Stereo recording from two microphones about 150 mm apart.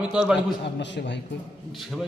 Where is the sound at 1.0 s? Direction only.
90° left.